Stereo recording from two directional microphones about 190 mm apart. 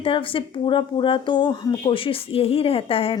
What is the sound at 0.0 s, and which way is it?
A woman's voice, 30° left (ahead or behind).